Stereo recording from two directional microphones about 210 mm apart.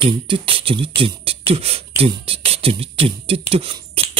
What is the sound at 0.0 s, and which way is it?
Speech, 25° right (ahead or behind).